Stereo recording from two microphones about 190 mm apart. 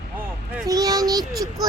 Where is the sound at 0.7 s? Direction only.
20° right (ahead or behind).